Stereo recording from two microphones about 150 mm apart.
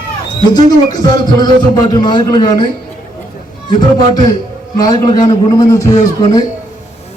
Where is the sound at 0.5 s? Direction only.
30° left (ahead or behind).